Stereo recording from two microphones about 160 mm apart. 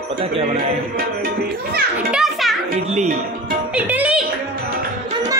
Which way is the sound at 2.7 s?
45° right (ahead or behind).